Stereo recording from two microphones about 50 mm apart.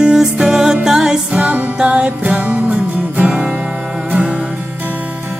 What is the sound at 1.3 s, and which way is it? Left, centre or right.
Music, right.